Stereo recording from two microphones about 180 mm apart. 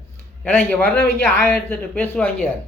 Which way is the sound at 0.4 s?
5° left (ahead or behind).